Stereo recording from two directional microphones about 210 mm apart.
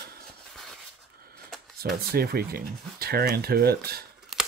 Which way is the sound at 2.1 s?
45° right (ahead or behind).